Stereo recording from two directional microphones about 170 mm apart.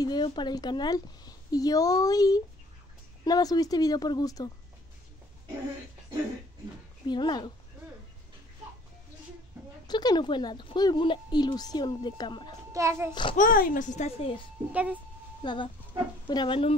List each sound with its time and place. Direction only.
0.0 s speech: 25° left (ahead or behind)
7.1 s speech: 25° left (ahead or behind)
9.8 s speech: 25° left (ahead or behind)
12.7 s a child's voice: 15° right (ahead or behind)
13.1 s speech: 30° left (ahead or behind)
13.4 s a woman's voice: 55° left (ahead or behind)
14.7 s a child's voice: 10° right (ahead or behind)
15.4 s speech: 30° left (ahead or behind)